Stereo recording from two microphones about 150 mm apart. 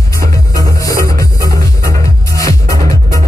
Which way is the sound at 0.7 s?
20° left (ahead or behind).